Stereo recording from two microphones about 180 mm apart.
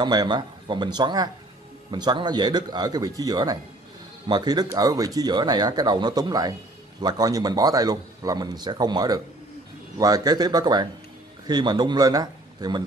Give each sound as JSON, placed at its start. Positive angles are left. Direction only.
{"t": 0.0, "sound": "a man's voice", "side_deg": -25}